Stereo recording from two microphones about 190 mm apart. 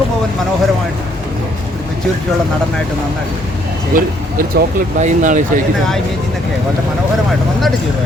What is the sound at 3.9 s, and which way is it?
Speech, 45° right (ahead or behind).